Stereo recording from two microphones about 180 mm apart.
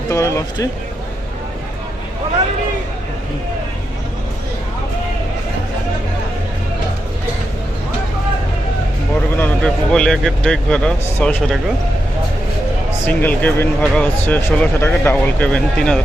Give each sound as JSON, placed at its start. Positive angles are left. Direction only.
{"t": 0.1, "sound": "speech", "side_deg": 15}
{"t": 9.4, "sound": "a man's voice", "side_deg": 5}
{"t": 13.1, "sound": "speech", "side_deg": 10}